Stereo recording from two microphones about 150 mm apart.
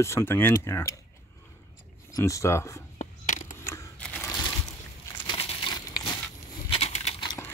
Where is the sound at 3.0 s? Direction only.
55° left (ahead or behind).